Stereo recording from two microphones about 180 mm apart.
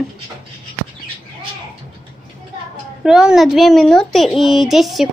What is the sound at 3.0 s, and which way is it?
A woman's voice, 5° right (ahead or behind).